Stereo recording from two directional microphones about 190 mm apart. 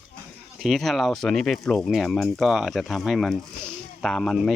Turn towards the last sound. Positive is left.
turn(degrees=0)  # may be behind; listen again after turning